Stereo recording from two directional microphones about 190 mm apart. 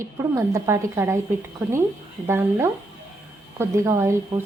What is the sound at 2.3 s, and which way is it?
A woman's voice, 15° right (ahead or behind).